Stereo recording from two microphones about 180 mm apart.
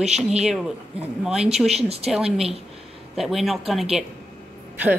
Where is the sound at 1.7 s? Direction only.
35° right (ahead or behind).